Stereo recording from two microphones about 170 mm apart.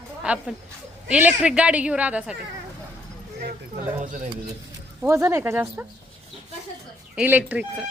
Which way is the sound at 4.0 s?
50° right (ahead or behind).